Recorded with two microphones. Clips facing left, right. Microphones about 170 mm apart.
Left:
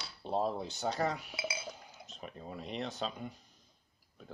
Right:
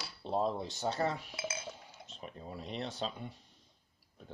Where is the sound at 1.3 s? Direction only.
10° left (ahead or behind).